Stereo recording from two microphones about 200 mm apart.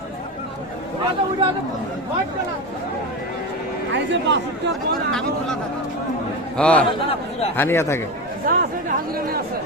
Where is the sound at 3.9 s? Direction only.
60° right (ahead or behind).